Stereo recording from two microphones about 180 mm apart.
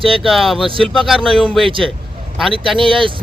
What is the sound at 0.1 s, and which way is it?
Speech, centre (ahead or behind).